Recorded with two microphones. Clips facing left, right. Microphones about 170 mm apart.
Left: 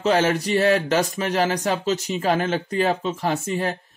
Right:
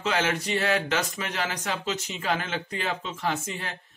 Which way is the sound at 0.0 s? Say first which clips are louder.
Left 7 dB; 35° left (ahead or behind).